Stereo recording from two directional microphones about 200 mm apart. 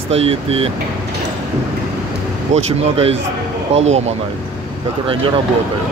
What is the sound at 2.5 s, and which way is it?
Speech, 30° right (ahead or behind).